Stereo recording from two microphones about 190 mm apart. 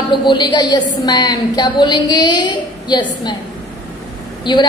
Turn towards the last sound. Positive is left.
turn(degrees=25)  # may be behind; listen again after turning